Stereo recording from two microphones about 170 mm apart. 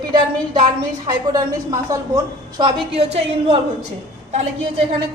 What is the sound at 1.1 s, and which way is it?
Speech, 20° right (ahead or behind).